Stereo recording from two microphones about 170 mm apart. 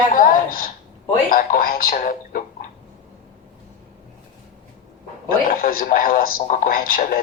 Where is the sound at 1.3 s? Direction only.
55° left (ahead or behind).